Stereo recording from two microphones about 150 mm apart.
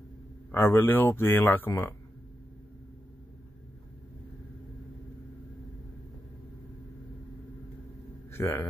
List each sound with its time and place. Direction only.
0.5 s speech: 15° left (ahead or behind)
8.3 s a man's voice: 15° left (ahead or behind)